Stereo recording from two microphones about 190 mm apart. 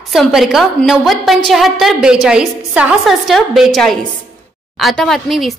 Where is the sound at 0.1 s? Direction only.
Centre (ahead or behind).